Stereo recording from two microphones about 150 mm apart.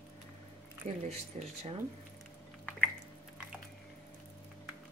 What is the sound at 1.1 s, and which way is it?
Speech, 45° right (ahead or behind).